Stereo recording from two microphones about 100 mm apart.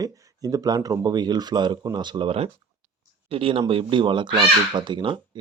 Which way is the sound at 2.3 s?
70° right (ahead or behind).